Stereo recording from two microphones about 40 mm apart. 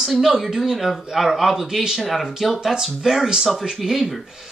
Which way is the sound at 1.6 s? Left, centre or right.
Centre.